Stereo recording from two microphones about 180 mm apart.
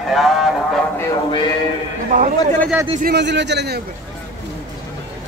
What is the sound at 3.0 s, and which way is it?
Speech, 70° right (ahead or behind).